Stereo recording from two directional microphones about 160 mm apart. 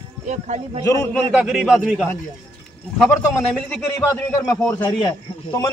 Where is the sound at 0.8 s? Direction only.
20° left (ahead or behind).